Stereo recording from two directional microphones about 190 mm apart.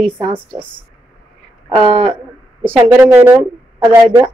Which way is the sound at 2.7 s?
10° right (ahead or behind).